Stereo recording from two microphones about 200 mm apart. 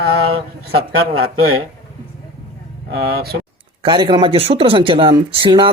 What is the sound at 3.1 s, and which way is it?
Speech, 50° right (ahead or behind).